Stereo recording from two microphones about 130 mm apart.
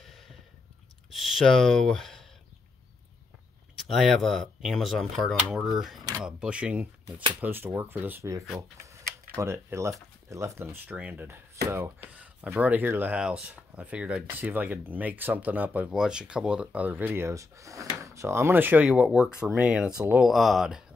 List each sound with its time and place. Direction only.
1.1 s speech: centre (ahead or behind)
3.7 s speech: centre (ahead or behind)
18.9 s speech: 5° right (ahead or behind)